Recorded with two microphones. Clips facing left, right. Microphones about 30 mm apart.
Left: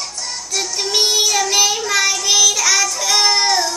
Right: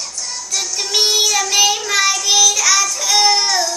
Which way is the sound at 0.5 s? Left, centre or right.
Left.